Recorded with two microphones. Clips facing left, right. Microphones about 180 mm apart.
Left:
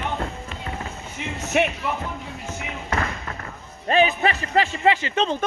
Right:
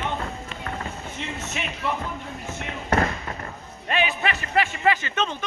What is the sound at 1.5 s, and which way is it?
Speech, 65° left (ahead or behind).